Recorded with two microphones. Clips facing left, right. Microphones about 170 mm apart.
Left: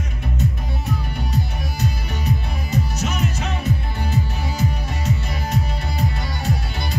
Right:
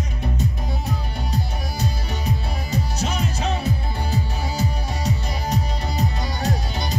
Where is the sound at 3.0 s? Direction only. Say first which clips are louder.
Left 1 dB; 35° right (ahead or behind).